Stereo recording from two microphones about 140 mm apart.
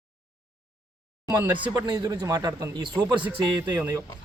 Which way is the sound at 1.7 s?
25° right (ahead or behind).